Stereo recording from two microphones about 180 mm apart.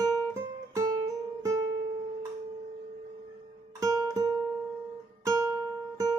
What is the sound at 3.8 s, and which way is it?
Music, 20° right (ahead or behind).